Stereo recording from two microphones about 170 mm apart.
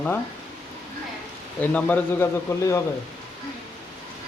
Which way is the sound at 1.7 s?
10° left (ahead or behind).